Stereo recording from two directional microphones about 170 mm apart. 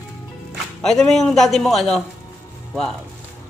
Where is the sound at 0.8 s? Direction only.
5° left (ahead or behind).